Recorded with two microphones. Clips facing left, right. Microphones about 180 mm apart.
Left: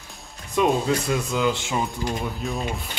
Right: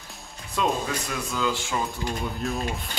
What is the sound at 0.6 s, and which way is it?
Speech, 20° left (ahead or behind).